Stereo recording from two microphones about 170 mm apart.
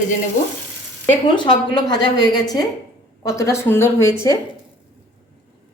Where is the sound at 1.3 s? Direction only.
25° left (ahead or behind).